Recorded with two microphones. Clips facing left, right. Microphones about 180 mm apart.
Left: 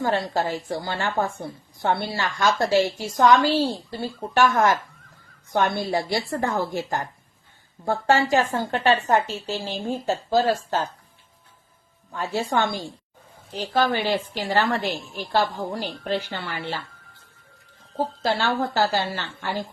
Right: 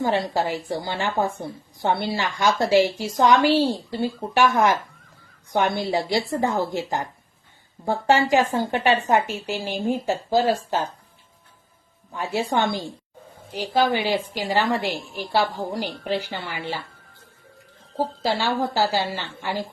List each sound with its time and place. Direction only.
0.0 s a woman's voice: 15° right (ahead or behind)
12.1 s a woman's voice: 15° right (ahead or behind)
17.9 s a woman's voice: 10° right (ahead or behind)